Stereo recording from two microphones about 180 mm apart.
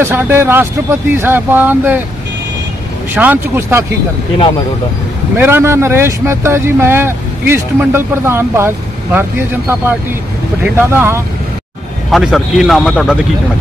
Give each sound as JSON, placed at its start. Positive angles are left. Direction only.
{"t": 0.0, "sound": "speech", "side_deg": -10}
{"t": 3.2, "sound": "speech", "side_deg": -10}
{"t": 5.4, "sound": "speech", "side_deg": -15}
{"t": 10.6, "sound": "speech", "side_deg": -10}
{"t": 12.1, "sound": "speech", "side_deg": 0}